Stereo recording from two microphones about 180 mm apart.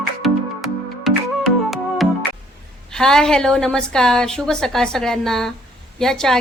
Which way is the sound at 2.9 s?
5° left (ahead or behind).